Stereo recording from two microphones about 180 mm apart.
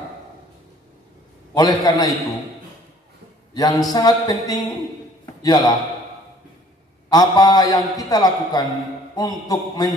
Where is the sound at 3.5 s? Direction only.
20° left (ahead or behind).